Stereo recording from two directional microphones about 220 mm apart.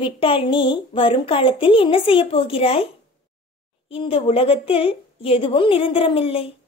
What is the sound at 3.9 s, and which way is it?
Speech, 25° left (ahead or behind).